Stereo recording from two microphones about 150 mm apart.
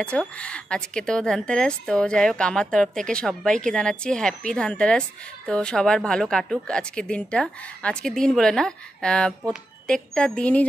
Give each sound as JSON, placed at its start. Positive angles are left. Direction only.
{"t": 0.0, "sound": "a woman's voice", "side_deg": 5}